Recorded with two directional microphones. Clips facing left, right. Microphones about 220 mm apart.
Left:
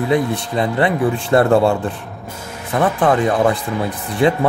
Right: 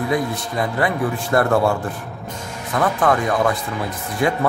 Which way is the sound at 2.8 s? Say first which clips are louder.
Left 3 dB; 30° left (ahead or behind).